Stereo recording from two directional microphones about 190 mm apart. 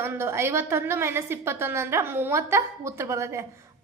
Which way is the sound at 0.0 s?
15° right (ahead or behind).